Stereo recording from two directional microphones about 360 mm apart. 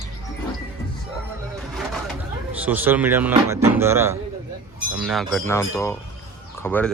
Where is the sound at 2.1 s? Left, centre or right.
Centre.